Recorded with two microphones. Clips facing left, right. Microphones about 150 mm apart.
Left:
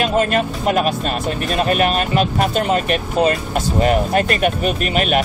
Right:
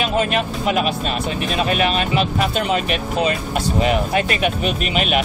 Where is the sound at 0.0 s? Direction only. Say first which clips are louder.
Left 3 dB; 45° left (ahead or behind).